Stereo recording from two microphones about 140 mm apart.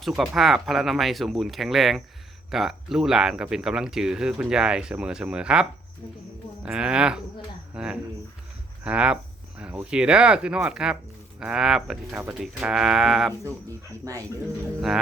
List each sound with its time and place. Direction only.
0.0 s speech: centre (ahead or behind)
14.0 s speech: 25° right (ahead or behind)